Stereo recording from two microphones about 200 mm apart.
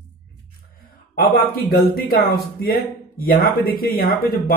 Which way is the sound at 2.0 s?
45° left (ahead or behind).